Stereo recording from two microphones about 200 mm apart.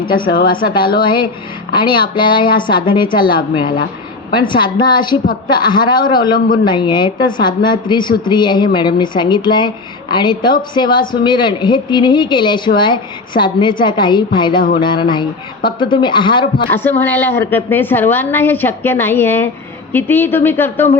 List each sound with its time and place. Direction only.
0.0 s a woman's voice: 25° left (ahead or behind)
0.3 s a woman's voice: 45° left (ahead or behind)
0.6 s a woman's voice: 25° left (ahead or behind)
16.7 s a woman's voice: 10° left (ahead or behind)